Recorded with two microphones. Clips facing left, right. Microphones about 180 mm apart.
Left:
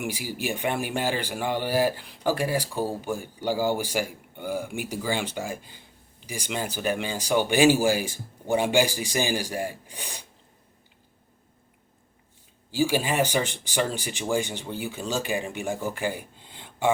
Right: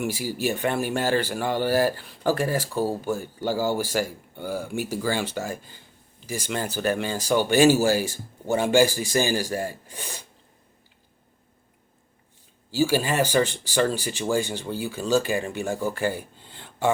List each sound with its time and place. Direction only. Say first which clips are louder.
0.0 s speech: right 4 dB; 15° left (ahead or behind)
12.7 s speech: right 2 dB; 15° left (ahead or behind)